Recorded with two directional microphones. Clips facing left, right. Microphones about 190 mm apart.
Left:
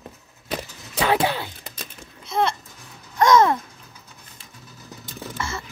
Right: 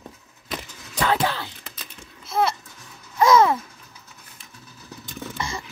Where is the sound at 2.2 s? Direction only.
5° right (ahead or behind).